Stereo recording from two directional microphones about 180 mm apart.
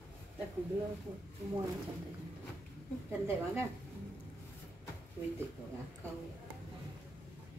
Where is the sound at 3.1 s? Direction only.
15° right (ahead or behind).